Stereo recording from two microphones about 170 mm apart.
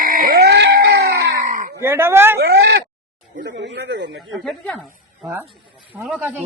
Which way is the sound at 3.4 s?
90° right.